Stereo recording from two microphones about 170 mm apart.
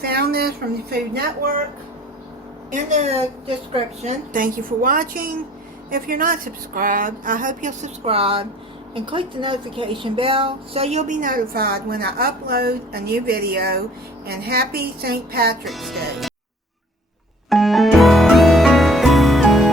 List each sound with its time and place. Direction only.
0.0 s speech: 65° right (ahead or behind)
2.6 s a woman's voice: 45° right (ahead or behind)
8.0 s a woman's voice: 35° right (ahead or behind); by 15.5 s 65° right (ahead or behind)
15.6 s speech: centre (ahead or behind)
17.5 s music: centre (ahead or behind)